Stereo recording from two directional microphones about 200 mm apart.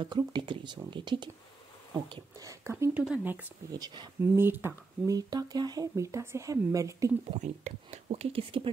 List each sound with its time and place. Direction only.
0.0 s speech: 20° right (ahead or behind); by 3.3 s 5° right (ahead or behind)
3.7 s speech: 20° right (ahead or behind)
7.2 s speech: 35° right (ahead or behind)